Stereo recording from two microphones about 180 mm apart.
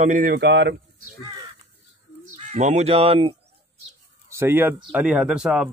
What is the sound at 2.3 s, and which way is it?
Speech, 40° right (ahead or behind).